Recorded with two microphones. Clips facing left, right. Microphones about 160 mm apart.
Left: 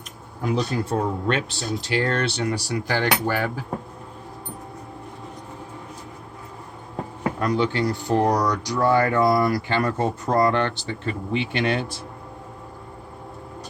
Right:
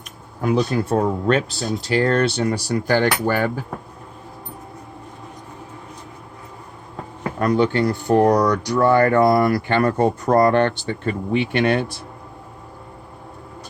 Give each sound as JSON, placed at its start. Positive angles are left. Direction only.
{"t": 0.4, "sound": "speech", "side_deg": -60}
{"t": 1.3, "sound": "speech", "side_deg": -40}
{"t": 7.3, "sound": "speech", "side_deg": -50}